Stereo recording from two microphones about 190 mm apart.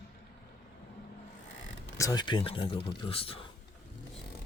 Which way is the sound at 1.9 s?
20° left (ahead or behind).